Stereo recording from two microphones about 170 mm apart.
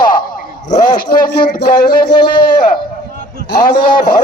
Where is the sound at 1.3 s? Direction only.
65° left (ahead or behind).